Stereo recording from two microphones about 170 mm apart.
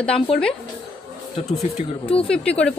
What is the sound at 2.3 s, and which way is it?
Speech, 5° left (ahead or behind).